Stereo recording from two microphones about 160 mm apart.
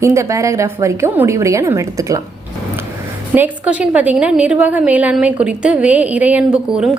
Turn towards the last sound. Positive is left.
turn(degrees=-5)  # may be behind; listen again after turning